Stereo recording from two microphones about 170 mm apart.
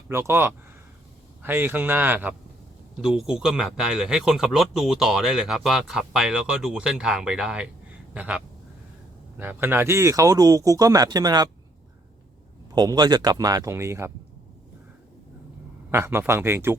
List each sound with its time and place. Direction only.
0.1 s a man's voice: 15° right (ahead or behind)
9.4 s speech: 10° right (ahead or behind)
12.7 s speech: 25° right (ahead or behind)
15.9 s a man's voice: 15° right (ahead or behind)